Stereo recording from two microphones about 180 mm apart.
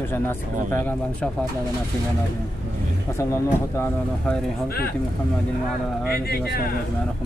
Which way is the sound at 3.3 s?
15° left (ahead or behind).